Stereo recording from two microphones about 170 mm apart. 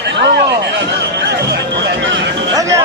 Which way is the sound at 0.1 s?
85° right.